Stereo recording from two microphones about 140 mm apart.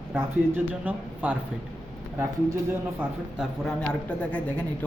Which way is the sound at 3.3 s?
5° left (ahead or behind).